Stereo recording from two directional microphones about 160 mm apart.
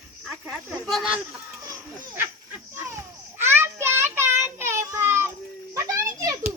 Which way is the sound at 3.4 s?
15° right (ahead or behind).